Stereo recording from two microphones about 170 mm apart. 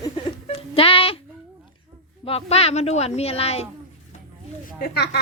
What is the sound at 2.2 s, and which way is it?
A woman's voice, 35° left (ahead or behind).